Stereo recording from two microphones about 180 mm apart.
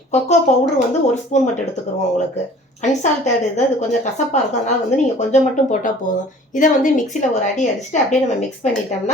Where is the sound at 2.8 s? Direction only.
40° left (ahead or behind).